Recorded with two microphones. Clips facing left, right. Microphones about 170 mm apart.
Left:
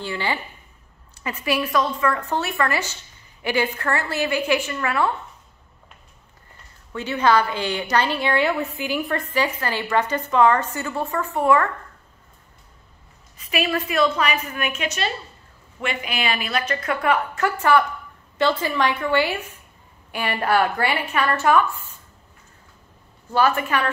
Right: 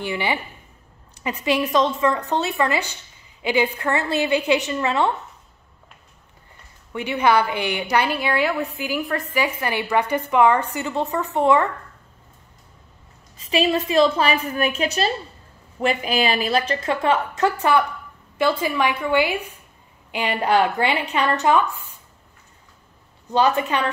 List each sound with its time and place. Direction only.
0.0 s a woman's voice: 15° right (ahead or behind)
6.9 s a woman's voice: 15° right (ahead or behind)
9.4 s a woman's voice: 15° right (ahead or behind)
13.5 s a woman's voice: 20° right (ahead or behind)
23.3 s a woman's voice: 20° right (ahead or behind)